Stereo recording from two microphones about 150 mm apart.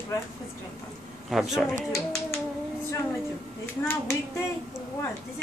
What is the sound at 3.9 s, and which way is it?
Speech, 15° left (ahead or behind).